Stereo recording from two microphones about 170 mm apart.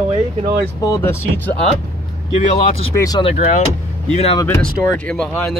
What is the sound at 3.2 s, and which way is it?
Speech, 40° left (ahead or behind).